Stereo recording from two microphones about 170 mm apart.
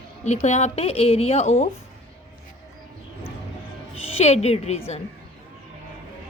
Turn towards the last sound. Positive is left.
turn(degrees=35)  # may be behind; listen again after turning